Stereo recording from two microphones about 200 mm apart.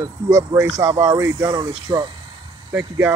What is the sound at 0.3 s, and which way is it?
Speech, 15° right (ahead or behind).